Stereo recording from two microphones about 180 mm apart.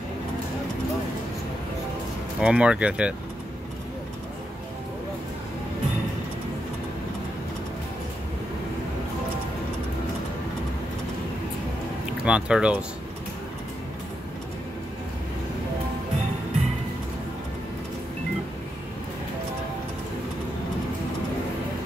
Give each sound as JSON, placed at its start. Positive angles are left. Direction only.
{"t": 2.4, "sound": "speech", "side_deg": -5}
{"t": 12.3, "sound": "speech", "side_deg": -5}